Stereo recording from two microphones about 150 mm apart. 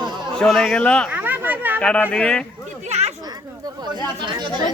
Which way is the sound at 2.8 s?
50° right (ahead or behind).